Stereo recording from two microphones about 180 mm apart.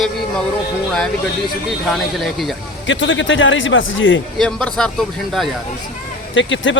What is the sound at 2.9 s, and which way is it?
Speech, 90° left.